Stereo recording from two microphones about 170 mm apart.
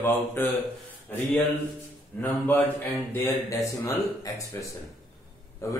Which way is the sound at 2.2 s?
10° left (ahead or behind).